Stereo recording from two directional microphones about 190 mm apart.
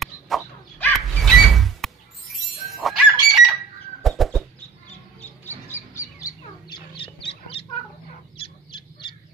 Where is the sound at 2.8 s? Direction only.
Centre (ahead or behind).